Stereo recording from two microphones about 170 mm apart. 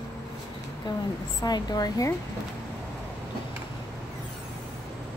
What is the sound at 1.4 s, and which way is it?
Speech, 25° left (ahead or behind).